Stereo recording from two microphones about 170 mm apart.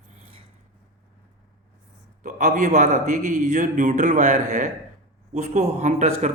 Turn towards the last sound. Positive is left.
turn(degrees=-45)  # may be behind; listen again after turning